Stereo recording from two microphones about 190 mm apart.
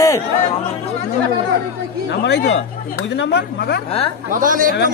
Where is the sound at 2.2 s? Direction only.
65° left (ahead or behind).